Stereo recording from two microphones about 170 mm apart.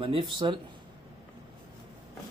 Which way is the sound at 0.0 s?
30° right (ahead or behind).